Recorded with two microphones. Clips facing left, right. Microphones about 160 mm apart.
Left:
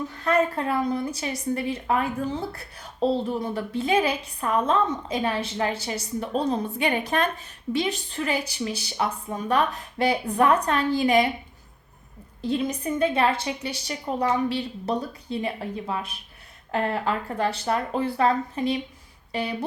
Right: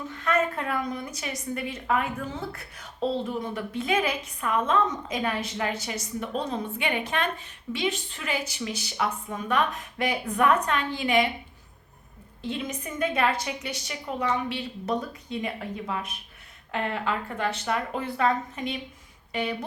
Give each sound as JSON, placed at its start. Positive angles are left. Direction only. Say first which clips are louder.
{"t": 0.1, "sound": "a woman's voice", "louder": "left 2 dB", "side_deg": 35}
{"t": 12.4, "sound": "a woman's voice", "louder": "left 6 dB", "side_deg": 35}